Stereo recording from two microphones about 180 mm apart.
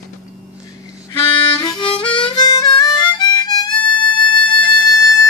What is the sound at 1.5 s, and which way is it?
Harmonica, 25° left (ahead or behind).